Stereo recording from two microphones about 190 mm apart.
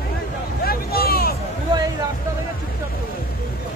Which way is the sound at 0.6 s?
55° left (ahead or behind).